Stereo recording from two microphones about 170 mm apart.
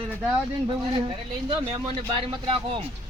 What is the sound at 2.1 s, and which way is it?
Speech, 30° right (ahead or behind).